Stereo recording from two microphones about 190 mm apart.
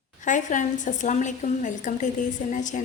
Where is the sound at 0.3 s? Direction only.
40° left (ahead or behind).